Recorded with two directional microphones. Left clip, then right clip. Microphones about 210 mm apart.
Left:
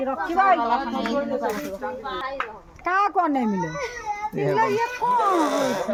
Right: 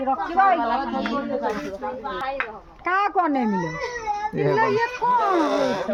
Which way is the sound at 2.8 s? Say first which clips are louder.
Even; 10° left (ahead or behind).